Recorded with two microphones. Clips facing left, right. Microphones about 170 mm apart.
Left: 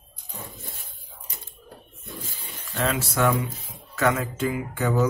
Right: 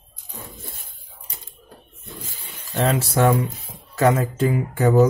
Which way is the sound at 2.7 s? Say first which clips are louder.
Right 5 dB; 35° right (ahead or behind).